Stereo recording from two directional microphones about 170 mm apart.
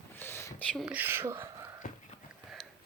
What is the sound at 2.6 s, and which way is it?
Sniff, 5° left (ahead or behind).